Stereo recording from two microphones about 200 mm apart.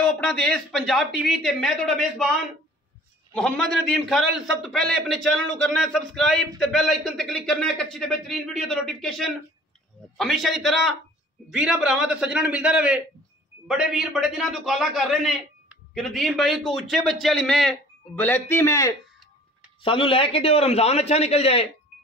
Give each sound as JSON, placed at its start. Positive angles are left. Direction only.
{"t": 0.0, "sound": "a man's voice", "side_deg": 5}
{"t": 3.3, "sound": "a man's voice", "side_deg": 5}
{"t": 19.8, "sound": "a man's voice", "side_deg": 25}